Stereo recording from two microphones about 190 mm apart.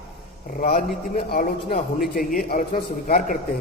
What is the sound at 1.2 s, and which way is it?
Speech, 50° left (ahead or behind).